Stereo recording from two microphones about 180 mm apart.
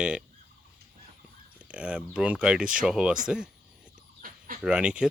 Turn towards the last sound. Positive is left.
turn(degrees=-5)  # may be behind; listen again after turning